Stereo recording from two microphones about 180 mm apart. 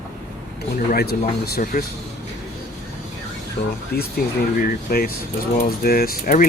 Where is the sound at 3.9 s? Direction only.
60° left (ahead or behind).